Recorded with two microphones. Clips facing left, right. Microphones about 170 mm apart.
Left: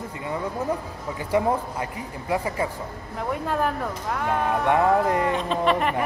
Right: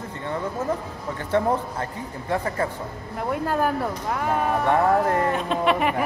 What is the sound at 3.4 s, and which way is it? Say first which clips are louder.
Speech: right 3 dB; centre (ahead or behind).